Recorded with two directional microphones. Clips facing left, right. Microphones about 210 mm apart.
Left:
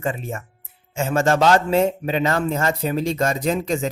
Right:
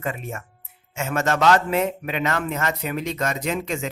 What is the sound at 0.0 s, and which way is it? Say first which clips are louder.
Speech: left 3 dB; 30° left (ahead or behind).